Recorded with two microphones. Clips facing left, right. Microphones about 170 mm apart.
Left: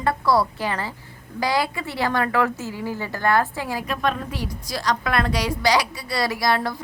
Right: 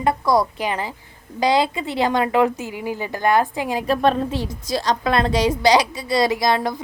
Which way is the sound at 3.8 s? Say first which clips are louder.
Right 9 dB; 35° right (ahead or behind).